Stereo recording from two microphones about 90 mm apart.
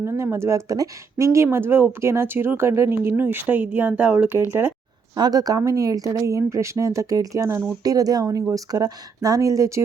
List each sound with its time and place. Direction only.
0.0 s speech: 30° right (ahead or behind)
5.1 s speech: 45° right (ahead or behind)